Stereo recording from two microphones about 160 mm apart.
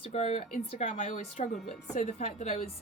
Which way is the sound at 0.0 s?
40° left (ahead or behind).